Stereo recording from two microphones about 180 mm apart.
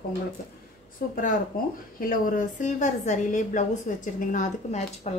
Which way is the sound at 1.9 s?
50° left (ahead or behind).